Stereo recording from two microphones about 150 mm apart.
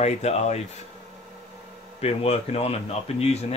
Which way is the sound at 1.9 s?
40° left (ahead or behind).